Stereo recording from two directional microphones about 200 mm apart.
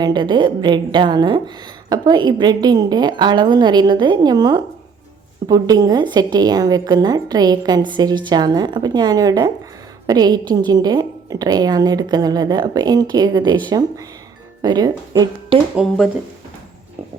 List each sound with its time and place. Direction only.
0.0 s a woman's voice: 20° right (ahead or behind)
15.7 s speech: 5° right (ahead or behind)